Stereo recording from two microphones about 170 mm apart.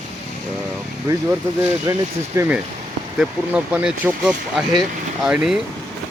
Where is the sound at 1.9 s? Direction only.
20° right (ahead or behind); by 5.6 s 5° right (ahead or behind).